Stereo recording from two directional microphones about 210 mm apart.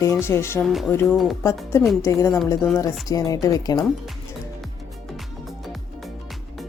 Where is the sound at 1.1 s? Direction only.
Centre (ahead or behind).